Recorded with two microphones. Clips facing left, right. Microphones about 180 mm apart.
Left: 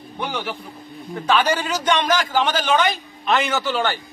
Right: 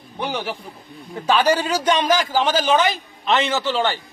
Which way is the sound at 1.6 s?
35° right (ahead or behind).